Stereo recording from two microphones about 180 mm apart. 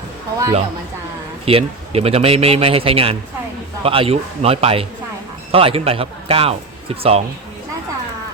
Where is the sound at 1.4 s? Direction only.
30° right (ahead or behind).